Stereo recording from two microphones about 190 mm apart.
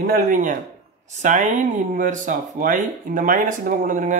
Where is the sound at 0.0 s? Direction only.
50° right (ahead or behind).